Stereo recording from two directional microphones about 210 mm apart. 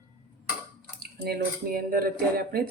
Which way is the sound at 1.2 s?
45° right (ahead or behind).